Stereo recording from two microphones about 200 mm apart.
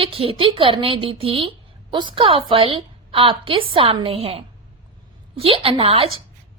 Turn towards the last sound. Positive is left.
turn(degrees=-30)  # may be behind; listen again after turning